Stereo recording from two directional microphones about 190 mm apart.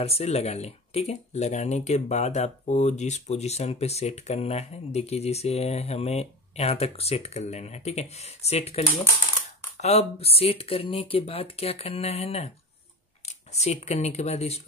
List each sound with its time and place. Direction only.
0.0 s speech: 35° left (ahead or behind)
13.6 s speech: 35° left (ahead or behind)